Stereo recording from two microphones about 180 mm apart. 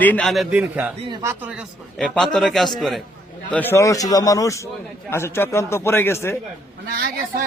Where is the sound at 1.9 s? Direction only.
5° left (ahead or behind).